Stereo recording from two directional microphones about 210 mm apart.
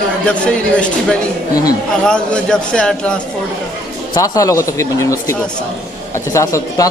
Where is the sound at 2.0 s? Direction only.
5° left (ahead or behind).